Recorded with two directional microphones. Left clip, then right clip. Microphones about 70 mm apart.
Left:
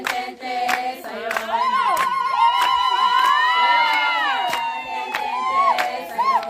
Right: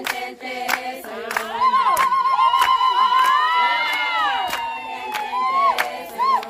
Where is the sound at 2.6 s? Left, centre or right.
Left.